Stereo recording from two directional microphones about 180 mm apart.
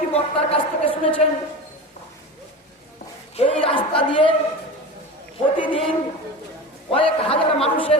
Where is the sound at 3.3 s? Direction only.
30° left (ahead or behind).